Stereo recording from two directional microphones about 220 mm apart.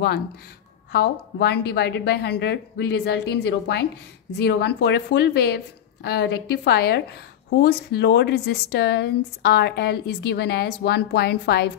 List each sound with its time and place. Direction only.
0.9 s a woman's voice: 45° left (ahead or behind)